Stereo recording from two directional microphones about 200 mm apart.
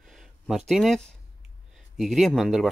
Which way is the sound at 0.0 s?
Centre (ahead or behind).